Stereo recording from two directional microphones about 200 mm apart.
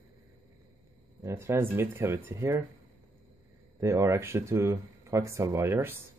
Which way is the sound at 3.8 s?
15° right (ahead or behind).